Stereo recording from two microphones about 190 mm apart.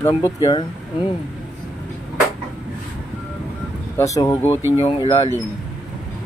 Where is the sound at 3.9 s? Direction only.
15° left (ahead or behind).